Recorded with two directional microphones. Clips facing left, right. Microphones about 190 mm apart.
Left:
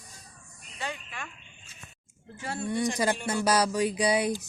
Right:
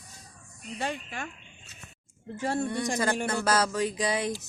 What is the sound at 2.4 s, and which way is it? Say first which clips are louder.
Speech: right 6 dB; 40° right (ahead or behind).